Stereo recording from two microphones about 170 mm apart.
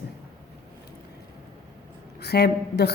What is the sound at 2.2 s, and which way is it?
Speech, 70° left (ahead or behind).